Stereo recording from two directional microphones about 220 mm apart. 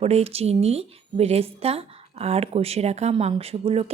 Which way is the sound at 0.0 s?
30° right (ahead or behind).